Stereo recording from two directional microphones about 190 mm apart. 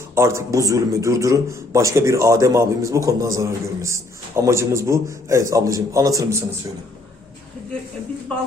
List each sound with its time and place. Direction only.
0.1 s a man's voice: 15° right (ahead or behind)